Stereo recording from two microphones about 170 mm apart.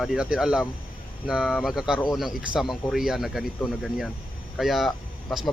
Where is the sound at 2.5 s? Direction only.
25° right (ahead or behind).